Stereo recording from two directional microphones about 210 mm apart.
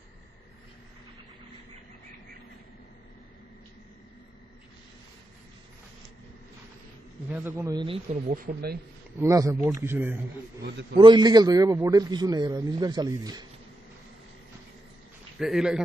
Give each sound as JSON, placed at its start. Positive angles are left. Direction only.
{"t": 7.3, "sound": "a man's voice", "side_deg": -10}
{"t": 8.4, "sound": "speech", "side_deg": -45}
{"t": 9.2, "sound": "speech", "side_deg": -15}
{"t": 10.6, "sound": "speech", "side_deg": -55}
{"t": 10.9, "sound": "a man's voice", "side_deg": -20}
{"t": 15.4, "sound": "speech", "side_deg": 0}